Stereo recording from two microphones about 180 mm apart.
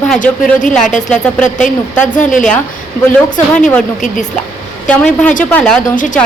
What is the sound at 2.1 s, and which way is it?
Speech, 45° left (ahead or behind).